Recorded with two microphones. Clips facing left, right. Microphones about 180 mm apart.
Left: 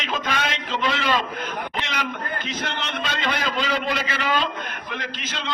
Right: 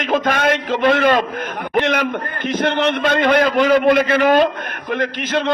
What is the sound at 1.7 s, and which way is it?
A man's voice, 55° right (ahead or behind).